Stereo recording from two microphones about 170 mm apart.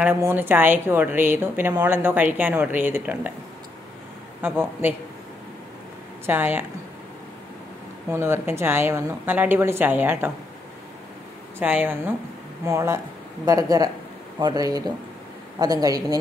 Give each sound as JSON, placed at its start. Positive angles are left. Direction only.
{"t": 0.0, "sound": "a woman's voice", "side_deg": -10}
{"t": 4.4, "sound": "a woman's voice", "side_deg": -10}
{"t": 6.2, "sound": "a woman's voice", "side_deg": -10}
{"t": 8.1, "sound": "a woman's voice", "side_deg": -15}
{"t": 11.6, "sound": "a woman's voice", "side_deg": -10}